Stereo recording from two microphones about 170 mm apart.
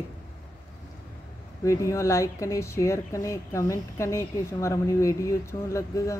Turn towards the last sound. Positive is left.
turn(degrees=20)  # may be behind; listen again after turning